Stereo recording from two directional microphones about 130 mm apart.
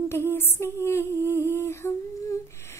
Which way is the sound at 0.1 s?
20° left (ahead or behind).